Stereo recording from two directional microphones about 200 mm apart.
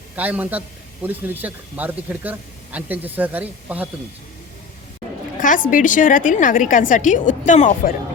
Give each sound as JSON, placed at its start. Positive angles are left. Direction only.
{"t": 0.2, "sound": "speech", "side_deg": -10}
{"t": 5.4, "sound": "a woman's voice", "side_deg": 40}